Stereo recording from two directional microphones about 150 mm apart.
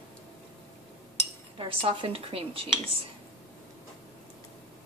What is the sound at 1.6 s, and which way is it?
A woman's voice, 40° right (ahead or behind).